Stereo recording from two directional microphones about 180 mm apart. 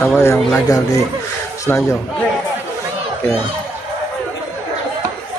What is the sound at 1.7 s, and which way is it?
Speech, 15° left (ahead or behind).